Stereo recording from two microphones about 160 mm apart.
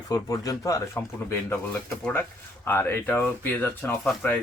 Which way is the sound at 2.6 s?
15° left (ahead or behind).